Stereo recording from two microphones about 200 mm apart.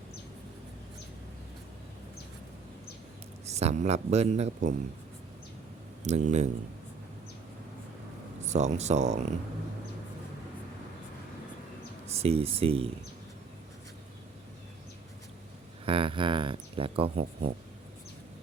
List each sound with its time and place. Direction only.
3.4 s speech: 35° right (ahead or behind)
6.0 s speech: 35° right (ahead or behind)
8.4 s speech: 35° right (ahead or behind)
12.0 s speech: 30° right (ahead or behind)
15.9 s speech: 25° right (ahead or behind)